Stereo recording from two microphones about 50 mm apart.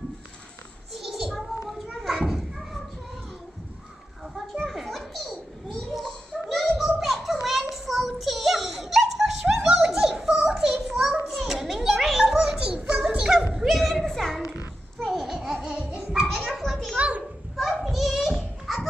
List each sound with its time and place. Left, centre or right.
0.9 s a sound: centre
1.7 s children playing: centre
4.6 s children playing: centre
6.8 s a sound: centre
11.2 s children playing: centre
12.5 s music: right
13.6 s children playing: centre
15.1 s babbling: centre
16.0 s children playing: centre
16.9 s children playing: right
17.7 s children playing: centre